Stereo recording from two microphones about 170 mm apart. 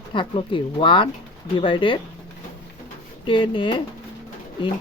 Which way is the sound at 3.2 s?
30° left (ahead or behind).